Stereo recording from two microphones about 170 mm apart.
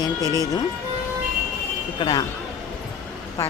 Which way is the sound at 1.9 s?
25° left (ahead or behind).